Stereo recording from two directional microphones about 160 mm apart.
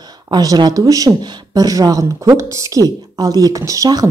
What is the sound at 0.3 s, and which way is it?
Speech, 25° right (ahead or behind).